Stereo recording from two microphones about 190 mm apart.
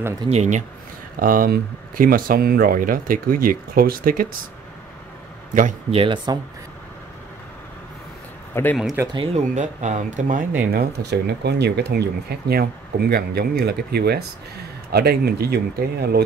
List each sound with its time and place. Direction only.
0.2 s speech: 35° right (ahead or behind)
5.5 s a man's voice: 45° right (ahead or behind)
5.9 s speech: 25° right (ahead or behind)
8.5 s speech: 10° left (ahead or behind)
8.9 s speech: 20° right (ahead or behind)
9.2 s speech: 35° right (ahead or behind)
11.1 s speech: 60° right (ahead or behind)